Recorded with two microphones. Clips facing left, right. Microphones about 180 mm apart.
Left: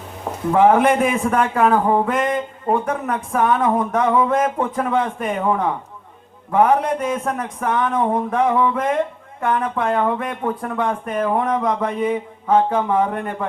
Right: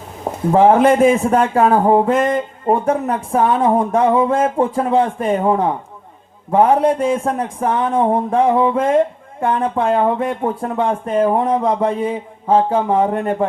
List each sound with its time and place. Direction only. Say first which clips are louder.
0.5 s speech: right 3 dB; 30° right (ahead or behind)